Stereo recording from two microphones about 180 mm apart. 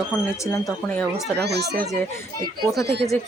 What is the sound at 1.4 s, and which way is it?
Speech, 65° right (ahead or behind).